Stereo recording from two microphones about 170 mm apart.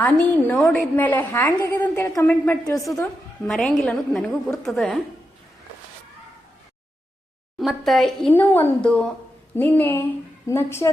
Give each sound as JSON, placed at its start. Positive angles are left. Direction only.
{"t": 0.0, "sound": "a woman's voice", "side_deg": 10}
{"t": 2.9, "sound": "a woman's voice", "side_deg": 5}
{"t": 7.6, "sound": "a woman's voice", "side_deg": 0}